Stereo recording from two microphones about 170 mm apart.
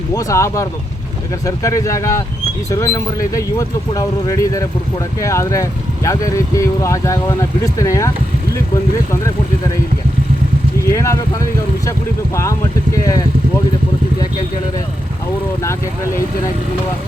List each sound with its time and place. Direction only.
0.1 s speech: 20° left (ahead or behind)
10.8 s speech: 15° left (ahead or behind)